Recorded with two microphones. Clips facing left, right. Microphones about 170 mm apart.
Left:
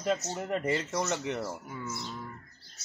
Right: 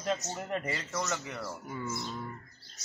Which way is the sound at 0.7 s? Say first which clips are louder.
Left 4 dB; 25° left (ahead or behind).